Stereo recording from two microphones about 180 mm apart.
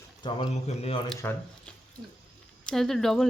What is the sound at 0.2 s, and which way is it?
Speech, 30° left (ahead or behind).